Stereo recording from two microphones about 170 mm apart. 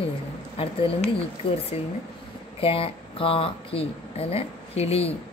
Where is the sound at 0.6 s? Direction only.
30° left (ahead or behind).